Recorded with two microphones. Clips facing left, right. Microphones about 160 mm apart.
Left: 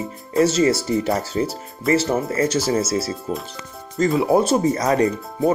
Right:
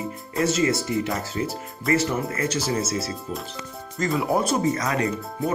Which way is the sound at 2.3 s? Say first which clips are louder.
Left 6 dB; 40° left (ahead or behind).